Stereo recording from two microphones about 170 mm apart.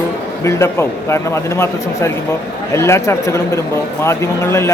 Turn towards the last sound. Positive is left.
turn(degrees=15)  # may be behind; listen again after turning